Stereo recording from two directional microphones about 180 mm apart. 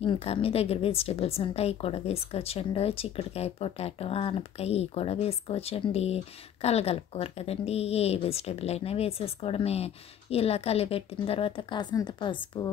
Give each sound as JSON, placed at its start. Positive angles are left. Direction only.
{"t": 0.0, "sound": "a woman's voice", "side_deg": 30}